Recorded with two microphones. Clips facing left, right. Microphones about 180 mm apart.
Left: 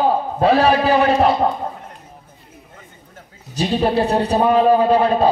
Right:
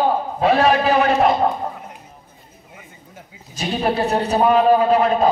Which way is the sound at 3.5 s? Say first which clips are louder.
Left 3 dB; 35° left (ahead or behind).